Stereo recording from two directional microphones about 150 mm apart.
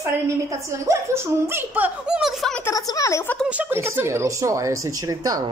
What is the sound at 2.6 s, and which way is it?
Speech, 20° left (ahead or behind).